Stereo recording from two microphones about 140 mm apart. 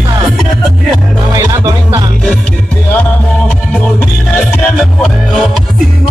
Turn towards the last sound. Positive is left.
turn(degrees=0)  # may be behind; listen again after turning